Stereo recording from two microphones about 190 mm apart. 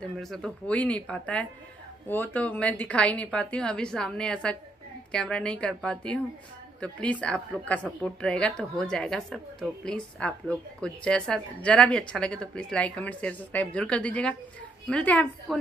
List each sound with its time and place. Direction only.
0.0 s a woman's voice: centre (ahead or behind)